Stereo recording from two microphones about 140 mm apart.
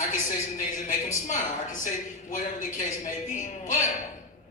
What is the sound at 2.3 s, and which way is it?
A man's voice, 60° left (ahead or behind).